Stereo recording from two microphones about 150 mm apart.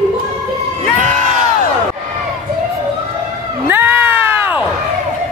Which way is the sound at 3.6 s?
10° right (ahead or behind).